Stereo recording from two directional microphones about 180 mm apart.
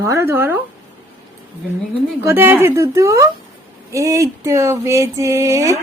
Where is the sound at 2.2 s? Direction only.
15° right (ahead or behind).